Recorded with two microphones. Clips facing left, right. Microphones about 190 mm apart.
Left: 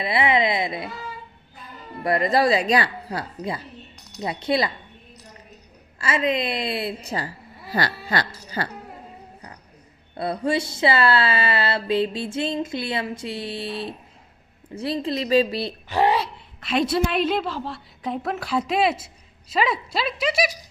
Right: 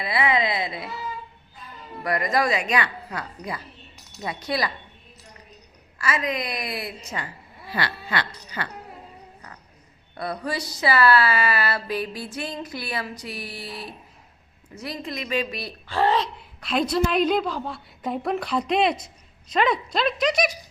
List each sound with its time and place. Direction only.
0.0 s speech: 25° left (ahead or behind)
2.0 s speech: 25° left (ahead or behind)
6.0 s speech: 30° left (ahead or behind)
10.2 s speech: 25° left (ahead or behind)
15.9 s a woman's voice: 15° left (ahead or behind)